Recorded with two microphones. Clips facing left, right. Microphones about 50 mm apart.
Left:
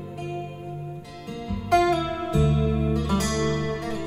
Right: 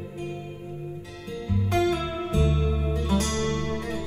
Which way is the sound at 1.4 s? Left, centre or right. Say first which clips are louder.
Left 4 dB; left.